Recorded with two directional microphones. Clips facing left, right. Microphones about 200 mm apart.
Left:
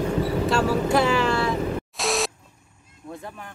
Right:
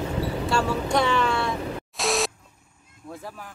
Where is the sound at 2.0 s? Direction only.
Centre (ahead or behind).